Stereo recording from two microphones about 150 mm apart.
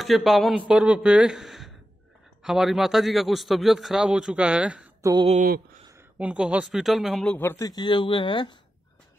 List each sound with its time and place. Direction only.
0.0 s a man's voice: centre (ahead or behind)
6.1 s a man's voice: 5° right (ahead or behind)
7.2 s speech: 15° left (ahead or behind); by 8.5 s 30° left (ahead or behind)